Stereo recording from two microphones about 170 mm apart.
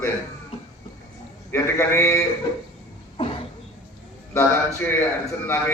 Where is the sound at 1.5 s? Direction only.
15° left (ahead or behind).